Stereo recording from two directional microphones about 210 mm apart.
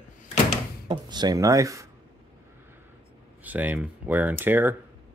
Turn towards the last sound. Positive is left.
turn(degrees=-10)  # may be behind; listen again after turning